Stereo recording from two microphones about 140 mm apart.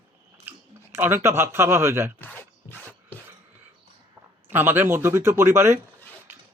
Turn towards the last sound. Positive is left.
turn(degrees=-20)  # may be behind; listen again after turning